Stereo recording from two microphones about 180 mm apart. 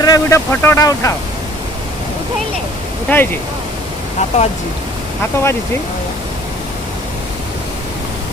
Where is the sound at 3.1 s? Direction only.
10° left (ahead or behind).